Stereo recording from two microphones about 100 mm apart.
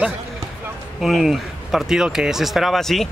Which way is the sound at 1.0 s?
5° right (ahead or behind).